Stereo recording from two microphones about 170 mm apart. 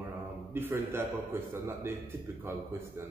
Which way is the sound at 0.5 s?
15° right (ahead or behind).